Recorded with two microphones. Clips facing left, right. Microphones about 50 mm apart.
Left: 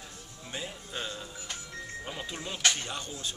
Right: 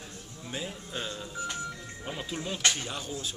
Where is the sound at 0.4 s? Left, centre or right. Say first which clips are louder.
Right 2 dB; centre.